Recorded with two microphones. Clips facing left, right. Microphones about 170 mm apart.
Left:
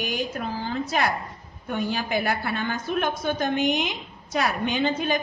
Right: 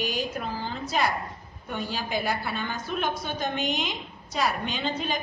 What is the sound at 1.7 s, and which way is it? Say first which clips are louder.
A woman's voice: left 4 dB; 55° left (ahead or behind).